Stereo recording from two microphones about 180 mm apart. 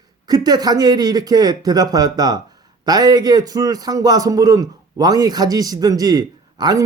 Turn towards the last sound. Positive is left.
turn(degrees=-20)  # may be behind; listen again after turning